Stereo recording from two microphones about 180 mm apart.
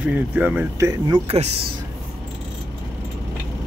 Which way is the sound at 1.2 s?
35° right (ahead or behind).